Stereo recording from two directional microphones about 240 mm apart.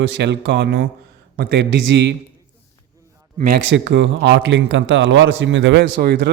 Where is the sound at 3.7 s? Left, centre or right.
Right.